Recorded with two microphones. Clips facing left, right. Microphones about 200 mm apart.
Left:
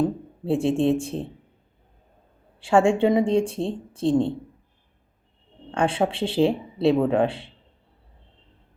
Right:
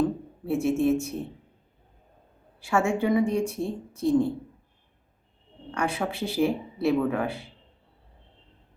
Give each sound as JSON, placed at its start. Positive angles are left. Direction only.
{"t": 0.0, "sound": "speech", "side_deg": 30}
{"t": 2.6, "sound": "speech", "side_deg": 30}
{"t": 5.7, "sound": "speech", "side_deg": 30}